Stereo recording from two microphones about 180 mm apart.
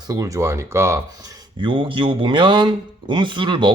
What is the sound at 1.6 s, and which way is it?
Speech, 30° right (ahead or behind).